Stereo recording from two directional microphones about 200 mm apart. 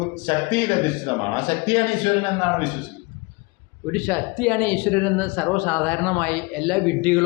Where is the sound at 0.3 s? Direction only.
25° left (ahead or behind).